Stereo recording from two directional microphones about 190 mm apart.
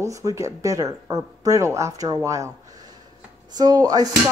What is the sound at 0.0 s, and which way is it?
Speech, 15° right (ahead or behind).